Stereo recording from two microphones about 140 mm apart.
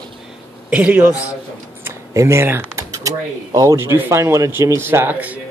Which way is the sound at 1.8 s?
20° right (ahead or behind).